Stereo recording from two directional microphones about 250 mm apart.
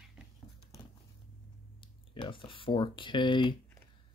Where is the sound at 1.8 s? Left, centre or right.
Centre.